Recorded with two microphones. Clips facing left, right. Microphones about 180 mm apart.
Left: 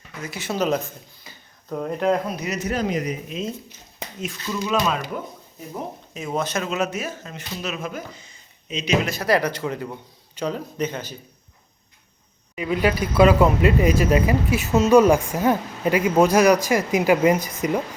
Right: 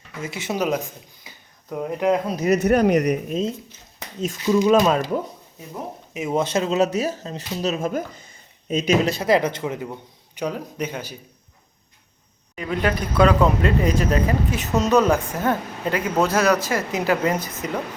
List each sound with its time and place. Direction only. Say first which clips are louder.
0.2 s a man's voice: even; 25° right (ahead or behind)
2.3 s speech: right 9 dB; 45° right (ahead or behind)
2.6 s speech: right 6 dB; 60° right (ahead or behind)
4.5 s speech: right 7 dB; 45° right (ahead or behind)
6.1 s speech: right 4 dB; 20° right (ahead or behind)
6.8 s a man's voice: right 6 dB; 40° right (ahead or behind)
9.0 s a man's voice: right 2 dB; 25° right (ahead or behind)
12.5 s speech: left 2 dB; 5° left (ahead or behind)